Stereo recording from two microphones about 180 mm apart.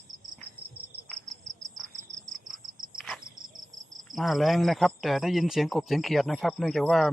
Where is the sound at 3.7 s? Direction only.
45° right (ahead or behind).